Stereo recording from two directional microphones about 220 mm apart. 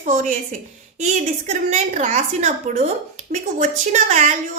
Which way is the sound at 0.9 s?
30° right (ahead or behind).